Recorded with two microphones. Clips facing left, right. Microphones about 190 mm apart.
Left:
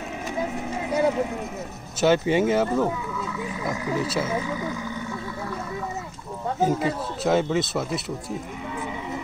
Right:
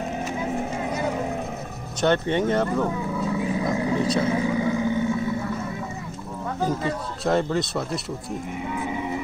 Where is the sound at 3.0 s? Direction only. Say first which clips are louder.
Right 5 dB; 35° right (ahead or behind).